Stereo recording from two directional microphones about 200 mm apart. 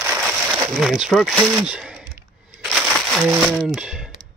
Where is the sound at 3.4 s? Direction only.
Centre (ahead or behind).